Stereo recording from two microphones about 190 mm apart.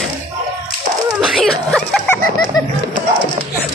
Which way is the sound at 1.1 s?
Centre (ahead or behind).